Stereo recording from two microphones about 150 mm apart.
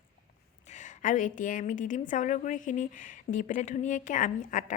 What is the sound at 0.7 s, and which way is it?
A woman's voice, 55° left (ahead or behind).